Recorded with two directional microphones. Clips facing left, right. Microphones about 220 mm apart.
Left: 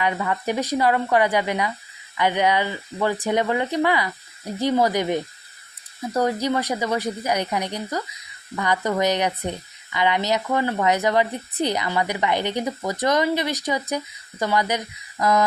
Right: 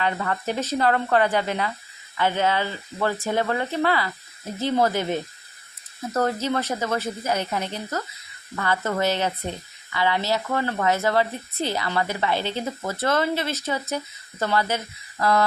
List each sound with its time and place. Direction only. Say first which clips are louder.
0.0 s speech: left 2 dB; 15° left (ahead or behind)